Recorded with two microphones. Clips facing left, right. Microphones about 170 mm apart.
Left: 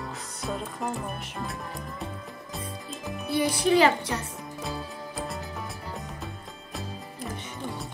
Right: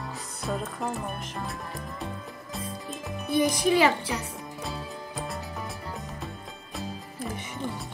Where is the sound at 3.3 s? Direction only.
20° right (ahead or behind).